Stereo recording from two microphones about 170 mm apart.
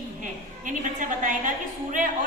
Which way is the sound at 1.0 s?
50° right (ahead or behind).